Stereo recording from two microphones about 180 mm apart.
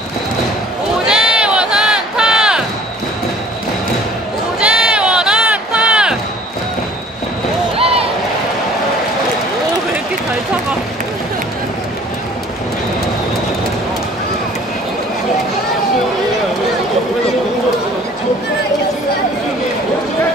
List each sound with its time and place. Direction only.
1.0 s run: 5° right (ahead or behind)
4.6 s run: 5° right (ahead or behind)
7.7 s a sound: 30° right (ahead or behind)